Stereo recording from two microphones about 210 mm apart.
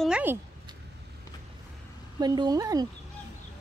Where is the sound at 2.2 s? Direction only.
20° right (ahead or behind).